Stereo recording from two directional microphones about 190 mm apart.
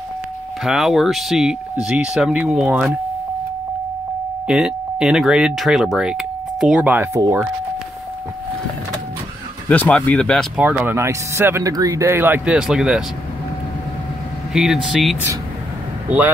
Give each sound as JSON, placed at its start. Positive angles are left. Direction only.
{"t": 0.7, "sound": "speech", "side_deg": 0}
{"t": 4.5, "sound": "speech", "side_deg": -5}
{"t": 7.2, "sound": "speech", "side_deg": -20}
{"t": 9.7, "sound": "speech", "side_deg": 5}
{"t": 10.6, "sound": "speech", "side_deg": -10}
{"t": 14.5, "sound": "speech", "side_deg": 0}